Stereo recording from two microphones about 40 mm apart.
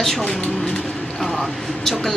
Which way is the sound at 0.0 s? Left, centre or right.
Centre.